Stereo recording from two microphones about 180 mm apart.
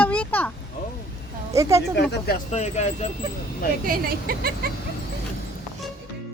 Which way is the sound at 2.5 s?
40° left (ahead or behind).